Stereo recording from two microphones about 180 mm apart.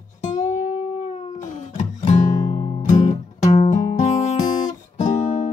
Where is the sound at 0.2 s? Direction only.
40° left (ahead or behind).